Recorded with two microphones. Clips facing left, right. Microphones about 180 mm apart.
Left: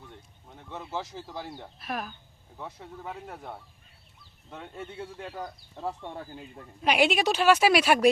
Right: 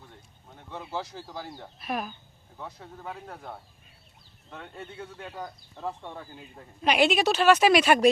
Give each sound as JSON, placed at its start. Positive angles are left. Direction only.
{"t": 0.7, "sound": "speech", "side_deg": 0}
{"t": 6.8, "sound": "a woman's voice", "side_deg": 10}